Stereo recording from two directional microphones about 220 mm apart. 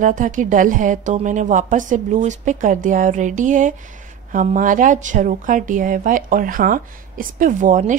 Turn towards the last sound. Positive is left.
turn(degrees=-35)  # may be behind; listen again after turning